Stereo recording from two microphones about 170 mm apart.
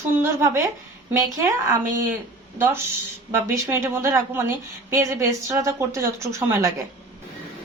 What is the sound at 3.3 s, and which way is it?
A woman's voice, 15° right (ahead or behind).